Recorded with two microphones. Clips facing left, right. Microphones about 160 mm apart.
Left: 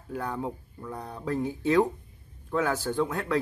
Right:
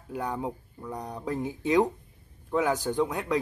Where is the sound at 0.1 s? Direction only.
15° right (ahead or behind).